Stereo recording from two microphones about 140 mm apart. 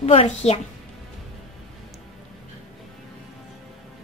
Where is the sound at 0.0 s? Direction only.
45° left (ahead or behind).